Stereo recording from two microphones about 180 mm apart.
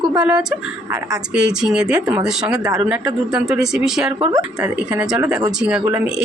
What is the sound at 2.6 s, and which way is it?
Speech, 20° right (ahead or behind).